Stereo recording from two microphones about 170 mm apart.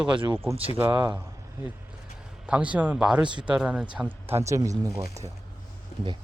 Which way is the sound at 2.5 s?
5° right (ahead or behind).